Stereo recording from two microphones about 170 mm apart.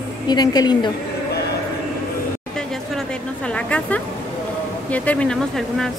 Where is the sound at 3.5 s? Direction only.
10° left (ahead or behind).